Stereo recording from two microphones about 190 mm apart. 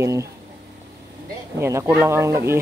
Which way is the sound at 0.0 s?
15° right (ahead or behind).